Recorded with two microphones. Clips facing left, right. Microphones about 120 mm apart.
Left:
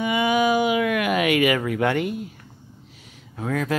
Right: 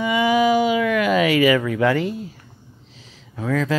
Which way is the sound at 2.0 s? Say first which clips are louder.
Right 1 dB; 30° right (ahead or behind).